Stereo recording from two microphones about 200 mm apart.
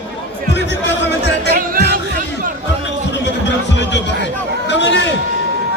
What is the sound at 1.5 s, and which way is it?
Music, 50° right (ahead or behind).